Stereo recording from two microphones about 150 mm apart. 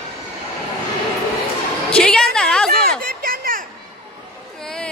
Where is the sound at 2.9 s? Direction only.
75° right (ahead or behind).